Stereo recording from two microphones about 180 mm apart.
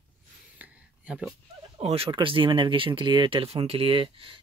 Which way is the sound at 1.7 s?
35° right (ahead or behind).